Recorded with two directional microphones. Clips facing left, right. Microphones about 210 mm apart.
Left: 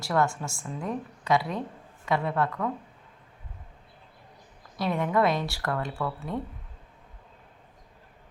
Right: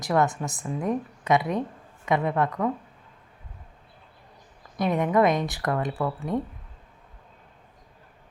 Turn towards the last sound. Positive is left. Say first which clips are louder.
# right 5 dB
turn(degrees=-15)  # may be behind; listen again after turning